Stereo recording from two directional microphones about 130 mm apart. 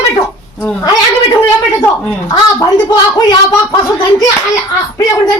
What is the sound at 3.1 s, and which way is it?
Speech, 25° left (ahead or behind).